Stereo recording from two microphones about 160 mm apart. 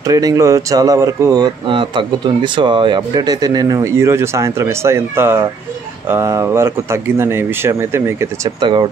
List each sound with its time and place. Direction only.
0.0 s speech: 20° right (ahead or behind)
8.5 s speech: 30° right (ahead or behind)